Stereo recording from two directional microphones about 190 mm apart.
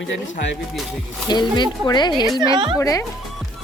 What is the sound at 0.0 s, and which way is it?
Speech, 75° left (ahead or behind).